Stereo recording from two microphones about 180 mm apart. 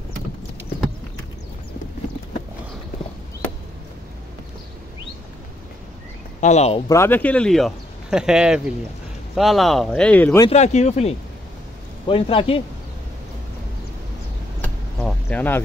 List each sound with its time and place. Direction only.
6.4 s speech: 40° left (ahead or behind)
6.9 s speech: 15° left (ahead or behind)
10.5 s speech: 40° left (ahead or behind)
15.0 s a sound: 5° left (ahead or behind)